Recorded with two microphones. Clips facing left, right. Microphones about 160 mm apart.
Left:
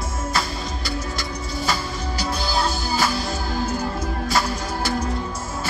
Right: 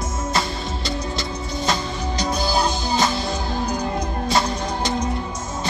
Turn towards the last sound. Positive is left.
turn(degrees=-20)  # may be behind; listen again after turning